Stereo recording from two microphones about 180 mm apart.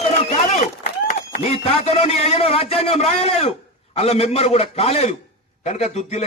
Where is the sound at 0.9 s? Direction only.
45° left (ahead or behind).